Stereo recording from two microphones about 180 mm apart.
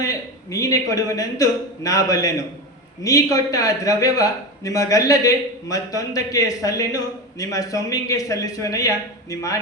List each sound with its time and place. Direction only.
0.0 s a man's voice: 20° left (ahead or behind)